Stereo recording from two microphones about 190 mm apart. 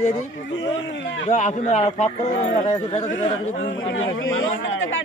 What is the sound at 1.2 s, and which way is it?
Speech, 40° left (ahead or behind).